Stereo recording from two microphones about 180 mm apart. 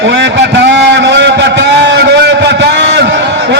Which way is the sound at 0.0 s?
75° right (ahead or behind).